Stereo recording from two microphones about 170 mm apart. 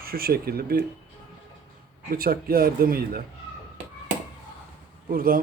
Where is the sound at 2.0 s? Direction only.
60° right (ahead or behind).